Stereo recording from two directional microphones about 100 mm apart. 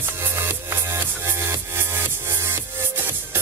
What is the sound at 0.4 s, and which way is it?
Music, 25° right (ahead or behind).